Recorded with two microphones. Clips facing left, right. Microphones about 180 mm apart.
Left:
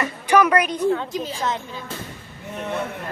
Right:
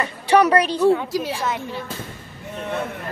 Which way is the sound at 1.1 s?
80° right.